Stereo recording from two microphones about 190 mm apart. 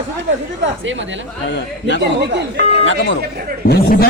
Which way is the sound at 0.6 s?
80° right.